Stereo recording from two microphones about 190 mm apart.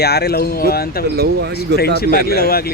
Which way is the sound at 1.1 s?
55° right (ahead or behind).